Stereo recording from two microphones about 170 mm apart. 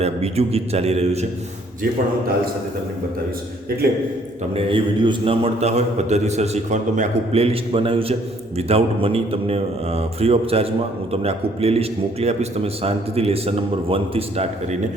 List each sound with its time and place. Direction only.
0.0 s a man's voice: 35° right (ahead or behind)
4.5 s a man's voice: 30° right (ahead or behind)